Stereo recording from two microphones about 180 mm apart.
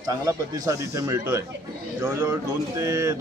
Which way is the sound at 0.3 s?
15° right (ahead or behind).